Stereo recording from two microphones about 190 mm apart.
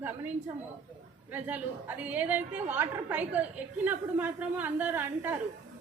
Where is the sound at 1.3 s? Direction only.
10° right (ahead or behind).